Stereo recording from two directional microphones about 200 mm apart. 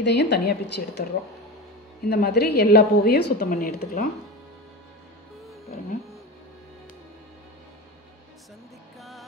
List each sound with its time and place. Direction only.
0.0 s a woman's voice: 60° left (ahead or behind)
2.0 s a woman's voice: 50° left (ahead or behind)